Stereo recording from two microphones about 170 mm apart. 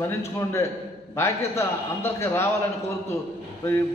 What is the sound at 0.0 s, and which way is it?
A man's voice, 15° left (ahead or behind).